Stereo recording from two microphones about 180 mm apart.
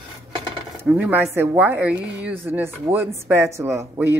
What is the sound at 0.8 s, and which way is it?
Speech, 10° right (ahead or behind).